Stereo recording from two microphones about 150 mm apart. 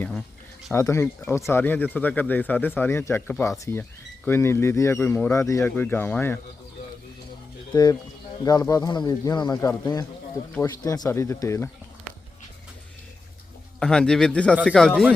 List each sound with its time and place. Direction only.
0.7 s speech: 20° left (ahead or behind)
8.4 s speech: 25° left (ahead or behind)
13.7 s a man's voice: 5° left (ahead or behind)